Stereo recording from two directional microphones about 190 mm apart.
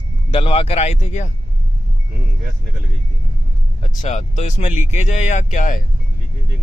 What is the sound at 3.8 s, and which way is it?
Speech, 40° left (ahead or behind).